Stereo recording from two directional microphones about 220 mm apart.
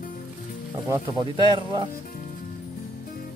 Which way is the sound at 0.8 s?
20° right (ahead or behind).